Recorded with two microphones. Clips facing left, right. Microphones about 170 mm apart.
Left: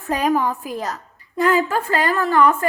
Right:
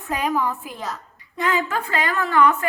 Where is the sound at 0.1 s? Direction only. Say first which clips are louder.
Left 4 dB; 40° left (ahead or behind).